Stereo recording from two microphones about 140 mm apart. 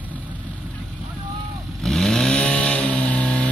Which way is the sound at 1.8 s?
5° left (ahead or behind).